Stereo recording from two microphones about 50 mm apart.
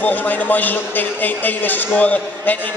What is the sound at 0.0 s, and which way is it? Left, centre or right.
A man's voice, left.